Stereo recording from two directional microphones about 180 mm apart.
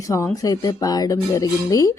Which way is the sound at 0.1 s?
20° left (ahead or behind).